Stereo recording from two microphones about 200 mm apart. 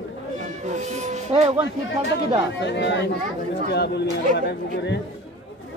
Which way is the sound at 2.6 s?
60° left (ahead or behind).